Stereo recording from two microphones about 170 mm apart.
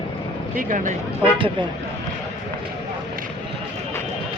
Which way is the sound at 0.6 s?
50° right (ahead or behind).